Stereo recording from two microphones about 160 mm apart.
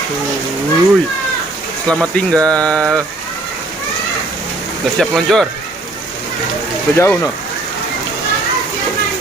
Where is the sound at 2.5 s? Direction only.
5° left (ahead or behind).